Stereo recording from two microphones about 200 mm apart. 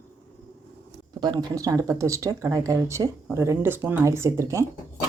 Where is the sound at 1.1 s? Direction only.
20° right (ahead or behind).